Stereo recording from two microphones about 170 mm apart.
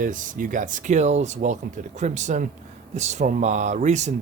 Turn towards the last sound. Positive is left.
turn(degrees=-45)  # may be behind; listen again after turning